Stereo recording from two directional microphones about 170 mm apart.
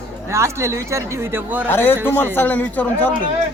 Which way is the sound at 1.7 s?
10° left (ahead or behind).